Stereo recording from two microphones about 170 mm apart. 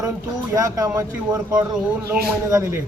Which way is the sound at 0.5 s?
20° right (ahead or behind).